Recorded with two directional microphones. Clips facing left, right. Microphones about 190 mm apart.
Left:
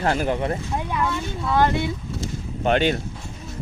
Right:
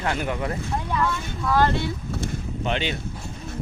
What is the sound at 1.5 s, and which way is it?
Speech, 15° left (ahead or behind).